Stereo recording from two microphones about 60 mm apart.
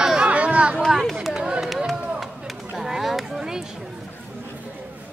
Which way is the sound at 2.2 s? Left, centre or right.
Centre.